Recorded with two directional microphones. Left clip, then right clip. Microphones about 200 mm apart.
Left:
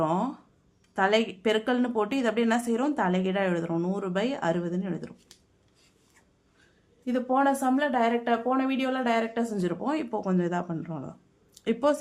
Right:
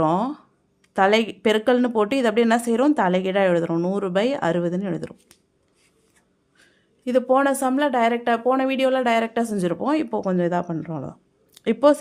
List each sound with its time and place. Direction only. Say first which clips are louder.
0.0 s a woman's voice: right 6 dB; 40° right (ahead or behind)
6.6 s a woman's voice: right 6 dB; 45° right (ahead or behind)